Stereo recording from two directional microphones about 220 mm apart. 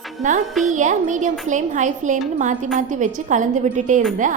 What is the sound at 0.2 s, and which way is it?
A woman's voice, 35° right (ahead or behind).